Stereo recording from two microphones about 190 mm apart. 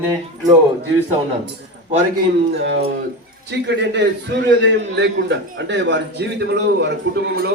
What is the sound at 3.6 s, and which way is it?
A man's voice, 65° right (ahead or behind).